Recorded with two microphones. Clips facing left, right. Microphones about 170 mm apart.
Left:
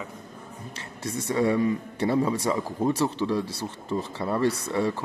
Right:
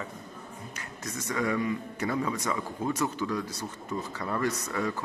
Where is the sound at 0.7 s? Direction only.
30° left (ahead or behind).